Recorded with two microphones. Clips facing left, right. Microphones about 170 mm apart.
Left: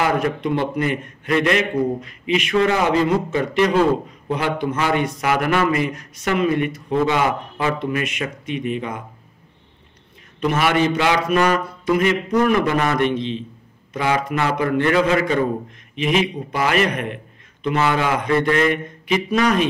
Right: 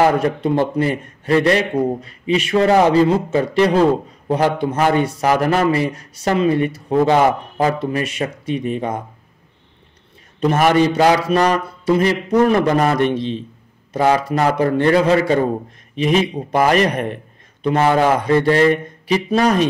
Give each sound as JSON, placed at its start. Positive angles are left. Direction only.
{"t": 0.0, "sound": "a man's voice", "side_deg": -30}
{"t": 10.4, "sound": "a man's voice", "side_deg": -40}